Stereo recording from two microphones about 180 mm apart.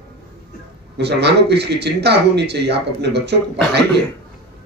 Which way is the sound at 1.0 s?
70° right (ahead or behind).